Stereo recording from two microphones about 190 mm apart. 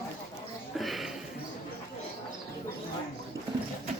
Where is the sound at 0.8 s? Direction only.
Centre (ahead or behind).